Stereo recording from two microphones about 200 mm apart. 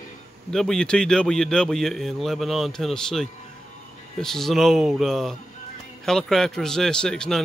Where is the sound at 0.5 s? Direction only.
5° left (ahead or behind).